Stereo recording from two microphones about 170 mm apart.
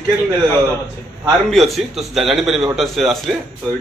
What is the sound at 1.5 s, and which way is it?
A man's voice, centre (ahead or behind).